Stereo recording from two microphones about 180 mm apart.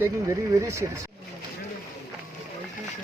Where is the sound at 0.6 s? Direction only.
15° right (ahead or behind).